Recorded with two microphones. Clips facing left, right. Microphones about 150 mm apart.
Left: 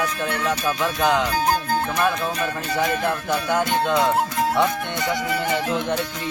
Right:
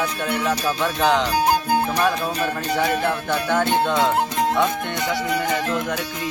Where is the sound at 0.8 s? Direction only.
10° left (ahead or behind).